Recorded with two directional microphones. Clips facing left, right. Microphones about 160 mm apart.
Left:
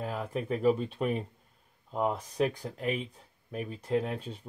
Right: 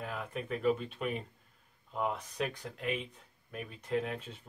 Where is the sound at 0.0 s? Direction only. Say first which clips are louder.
Left 5 dB; 35° left (ahead or behind).